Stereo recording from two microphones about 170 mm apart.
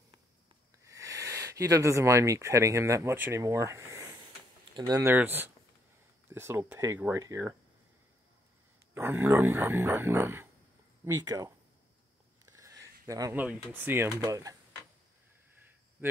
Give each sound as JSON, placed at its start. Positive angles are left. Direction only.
{"t": 0.8, "sound": "speech", "side_deg": -20}
{"t": 8.9, "sound": "speech", "side_deg": -15}
{"t": 12.4, "sound": "a sound", "side_deg": -20}
{"t": 13.7, "sound": "speech", "side_deg": -10}
{"t": 16.0, "sound": "speech", "side_deg": -10}